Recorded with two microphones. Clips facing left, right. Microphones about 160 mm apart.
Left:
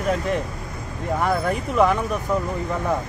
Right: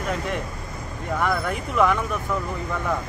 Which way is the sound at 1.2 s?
35° left (ahead or behind).